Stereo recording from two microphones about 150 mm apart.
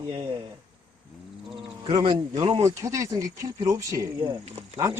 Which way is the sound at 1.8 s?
30° right (ahead or behind).